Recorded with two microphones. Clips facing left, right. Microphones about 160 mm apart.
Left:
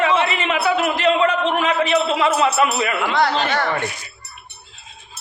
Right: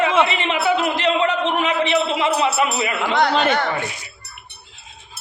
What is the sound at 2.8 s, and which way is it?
Speech, 20° right (ahead or behind).